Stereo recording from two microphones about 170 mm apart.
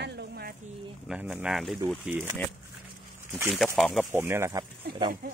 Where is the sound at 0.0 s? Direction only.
80° right.